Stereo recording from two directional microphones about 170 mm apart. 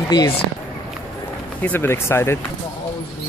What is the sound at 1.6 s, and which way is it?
Speech, 10° left (ahead or behind).